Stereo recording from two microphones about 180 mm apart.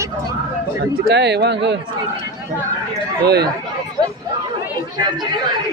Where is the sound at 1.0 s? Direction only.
70° right (ahead or behind).